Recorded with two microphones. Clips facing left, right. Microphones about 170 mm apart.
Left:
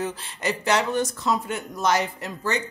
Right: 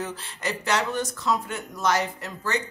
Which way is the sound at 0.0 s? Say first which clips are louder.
Left 3 dB; 20° left (ahead or behind).